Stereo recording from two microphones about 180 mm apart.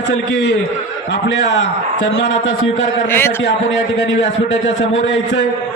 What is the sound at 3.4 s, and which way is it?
A man's voice, 90° left.